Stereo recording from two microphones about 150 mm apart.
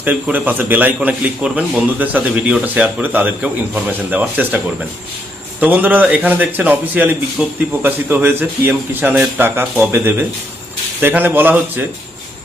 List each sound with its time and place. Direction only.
0.0 s a man's voice: 10° right (ahead or behind)